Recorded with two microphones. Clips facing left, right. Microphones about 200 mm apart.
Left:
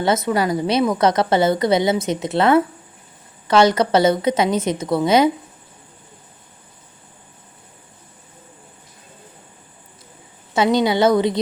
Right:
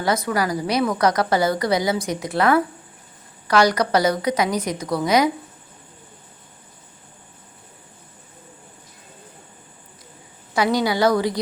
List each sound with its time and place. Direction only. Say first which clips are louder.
0.0 s a woman's voice: left 3 dB; 25° left (ahead or behind)
10.5 s a woman's voice: left 3 dB; 25° left (ahead or behind)